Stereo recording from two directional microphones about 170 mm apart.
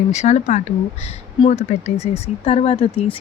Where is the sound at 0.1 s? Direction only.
40° left (ahead or behind).